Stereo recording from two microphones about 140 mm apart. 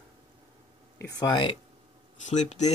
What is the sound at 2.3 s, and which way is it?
Speech, 55° left (ahead or behind).